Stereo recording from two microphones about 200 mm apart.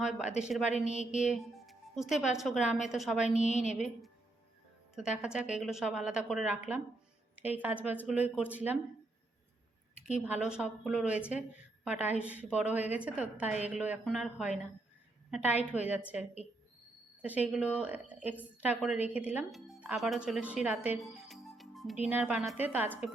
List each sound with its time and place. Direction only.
0.0 s speech: 5° right (ahead or behind)
0.7 s speech: 35° left (ahead or behind)
1.3 s speech: centre (ahead or behind)
3.5 s speech: 35° left (ahead or behind)
4.9 s a woman's voice: 5° right (ahead or behind)
10.2 s speech: 5° right (ahead or behind)
12.2 s a woman's voice: 5° right (ahead or behind)
17.2 s a woman's voice: 5° right (ahead or behind)